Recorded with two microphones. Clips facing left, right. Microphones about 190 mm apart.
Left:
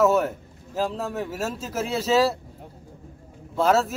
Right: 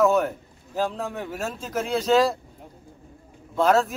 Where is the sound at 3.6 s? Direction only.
Centre (ahead or behind).